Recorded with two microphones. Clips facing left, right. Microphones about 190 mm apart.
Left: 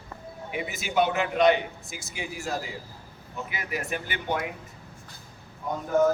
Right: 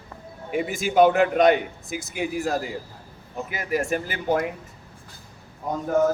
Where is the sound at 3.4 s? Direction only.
45° right (ahead or behind).